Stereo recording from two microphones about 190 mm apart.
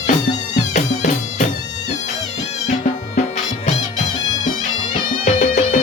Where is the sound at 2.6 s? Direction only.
40° left (ahead or behind).